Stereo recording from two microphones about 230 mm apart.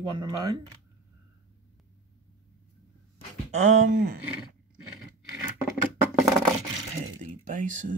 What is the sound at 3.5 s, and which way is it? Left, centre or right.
Speech, right.